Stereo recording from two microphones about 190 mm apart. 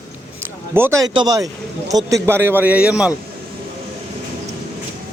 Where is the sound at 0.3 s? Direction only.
15° right (ahead or behind).